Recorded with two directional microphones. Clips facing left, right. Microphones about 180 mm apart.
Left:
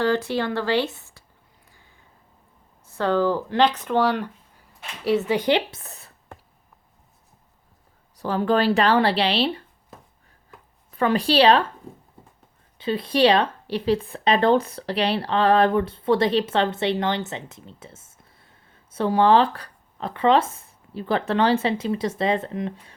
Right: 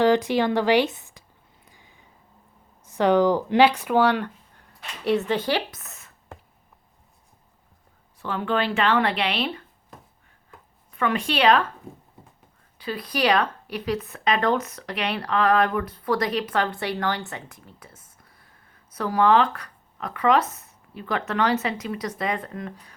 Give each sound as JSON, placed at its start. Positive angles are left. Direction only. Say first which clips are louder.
{"t": 0.0, "sound": "speech", "louder": "right 3 dB", "side_deg": -15}
{"t": 1.6, "sound": "a sound", "louder": "right 3 dB", "side_deg": -15}
{"t": 2.8, "sound": "speech", "louder": "right 3 dB", "side_deg": -15}
{"t": 5.4, "sound": "speech", "louder": "left 4 dB", "side_deg": 20}
{"t": 8.1, "sound": "speech", "louder": "left 4 dB", "side_deg": 40}
{"t": 10.9, "sound": "speech", "louder": "left 5 dB", "side_deg": 35}
{"t": 12.8, "sound": "speech", "louder": "left 6 dB", "side_deg": 25}